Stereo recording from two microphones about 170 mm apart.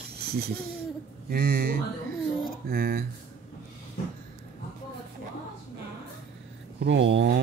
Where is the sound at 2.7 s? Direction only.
65° right (ahead or behind).